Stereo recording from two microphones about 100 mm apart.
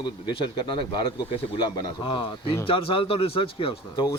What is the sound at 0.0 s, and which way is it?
A man's voice, 50° left (ahead or behind).